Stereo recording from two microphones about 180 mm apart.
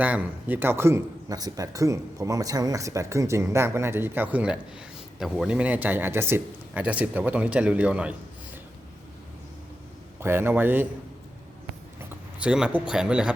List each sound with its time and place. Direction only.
0.0 s speech: 10° right (ahead or behind)
10.2 s speech: 15° right (ahead or behind)
11.9 s speech: 10° right (ahead or behind)